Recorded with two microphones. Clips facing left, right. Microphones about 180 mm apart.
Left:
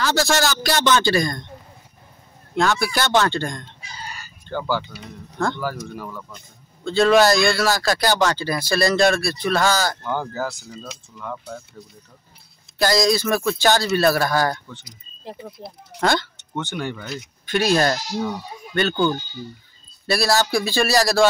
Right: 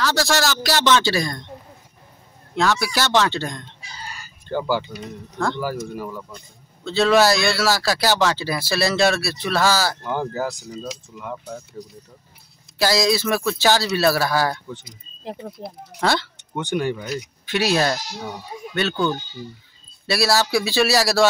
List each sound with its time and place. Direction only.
0.0 s a man's voice: centre (ahead or behind)
2.5 s a man's voice: centre (ahead or behind)
4.5 s a man's voice: 15° right (ahead or behind)
12.7 s a man's voice: 5° right (ahead or behind)
14.7 s speech: 15° right (ahead or behind)
15.6 s speech: 35° right (ahead or behind)
16.0 s a man's voice: 5° right (ahead or behind)
16.5 s speech: 15° right (ahead or behind)
20.1 s a man's voice: centre (ahead or behind)